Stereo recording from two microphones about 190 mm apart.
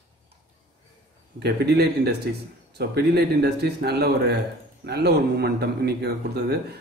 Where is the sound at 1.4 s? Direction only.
60° right (ahead or behind).